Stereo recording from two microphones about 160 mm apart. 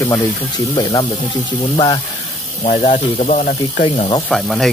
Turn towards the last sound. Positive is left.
turn(degrees=0)  # may be behind; listen again after turning